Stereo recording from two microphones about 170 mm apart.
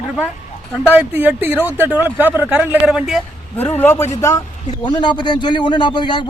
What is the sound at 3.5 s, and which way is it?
A man's voice, 10° left (ahead or behind).